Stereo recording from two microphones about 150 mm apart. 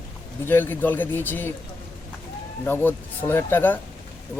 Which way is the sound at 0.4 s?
15° left (ahead or behind).